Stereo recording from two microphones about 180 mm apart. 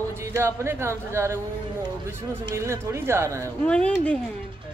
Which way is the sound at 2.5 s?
15° right (ahead or behind).